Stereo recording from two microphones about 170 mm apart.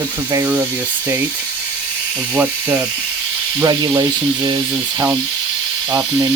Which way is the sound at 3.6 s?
25° right (ahead or behind).